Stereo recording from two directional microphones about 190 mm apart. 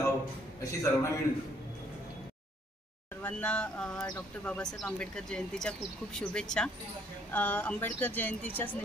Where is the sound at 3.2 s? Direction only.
10° left (ahead or behind).